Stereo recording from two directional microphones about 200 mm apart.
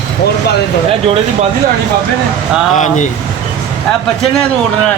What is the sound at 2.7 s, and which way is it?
Speech, 40° left (ahead or behind).